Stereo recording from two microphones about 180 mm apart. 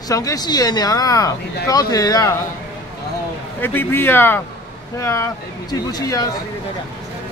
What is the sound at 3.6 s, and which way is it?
Speech, 10° left (ahead or behind).